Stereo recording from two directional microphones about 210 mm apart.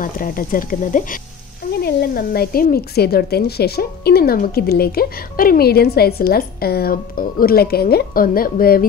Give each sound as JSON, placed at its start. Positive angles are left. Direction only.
{"t": 0.0, "sound": "a woman's voice", "side_deg": 40}